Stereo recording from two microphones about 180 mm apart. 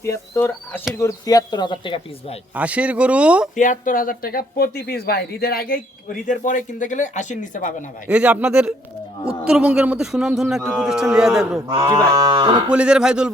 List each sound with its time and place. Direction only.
0.0 s speech: 15° left (ahead or behind)
2.6 s speech: 5° right (ahead or behind)
3.5 s speech: 45° left (ahead or behind)
6.2 s speech: 45° left (ahead or behind)
8.0 s a man's voice: 5° right (ahead or behind)
11.8 s cattle: 20° right (ahead or behind)
12.7 s a man's voice: 5° right (ahead or behind)